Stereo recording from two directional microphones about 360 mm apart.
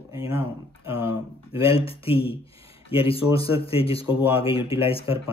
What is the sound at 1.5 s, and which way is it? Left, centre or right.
Speech, centre.